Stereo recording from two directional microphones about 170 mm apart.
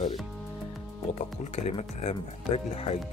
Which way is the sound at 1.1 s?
40° left (ahead or behind).